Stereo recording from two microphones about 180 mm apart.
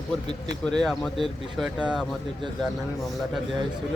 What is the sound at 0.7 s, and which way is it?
Speech, 5° left (ahead or behind).